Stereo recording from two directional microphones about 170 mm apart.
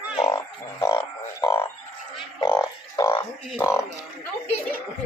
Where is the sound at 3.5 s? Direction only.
15° left (ahead or behind).